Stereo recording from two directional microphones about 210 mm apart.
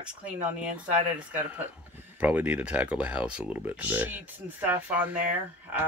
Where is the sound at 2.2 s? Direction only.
5° right (ahead or behind).